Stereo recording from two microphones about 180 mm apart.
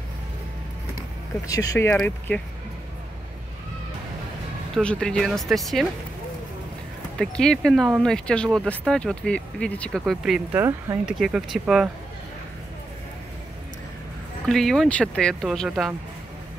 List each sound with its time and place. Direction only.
1.5 s speech: 20° left (ahead or behind)
4.7 s speech: 5° left (ahead or behind)
7.2 s speech: 5° left (ahead or behind)
10.5 s speech: 15° right (ahead or behind)
11.1 s speech: centre (ahead or behind)
14.5 s speech: centre (ahead or behind)